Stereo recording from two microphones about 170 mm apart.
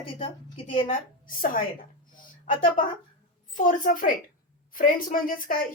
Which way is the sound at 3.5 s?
50° left (ahead or behind).